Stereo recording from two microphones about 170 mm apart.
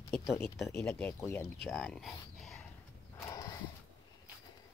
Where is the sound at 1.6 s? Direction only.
5° left (ahead or behind).